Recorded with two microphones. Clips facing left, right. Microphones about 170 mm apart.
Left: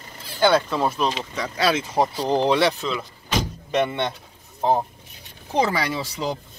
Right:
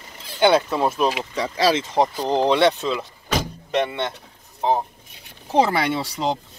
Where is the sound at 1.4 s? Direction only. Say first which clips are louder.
Right 3 dB; 30° right (ahead or behind).